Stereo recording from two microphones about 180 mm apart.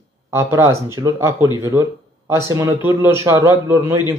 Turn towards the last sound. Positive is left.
turn(degrees=-15)  # may be behind; listen again after turning